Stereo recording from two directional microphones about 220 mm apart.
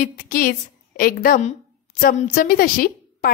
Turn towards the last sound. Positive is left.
turn(degrees=40)  # may be behind; listen again after turning